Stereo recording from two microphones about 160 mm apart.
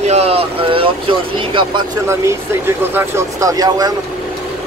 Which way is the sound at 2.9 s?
20° right (ahead or behind).